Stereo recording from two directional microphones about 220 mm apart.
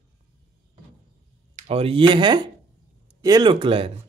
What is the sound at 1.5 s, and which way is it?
Speech, 25° right (ahead or behind).